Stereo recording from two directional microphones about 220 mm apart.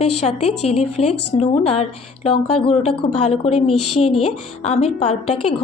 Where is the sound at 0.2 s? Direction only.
25° left (ahead or behind).